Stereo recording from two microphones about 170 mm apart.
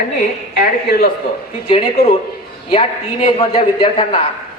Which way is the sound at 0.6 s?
60° left (ahead or behind).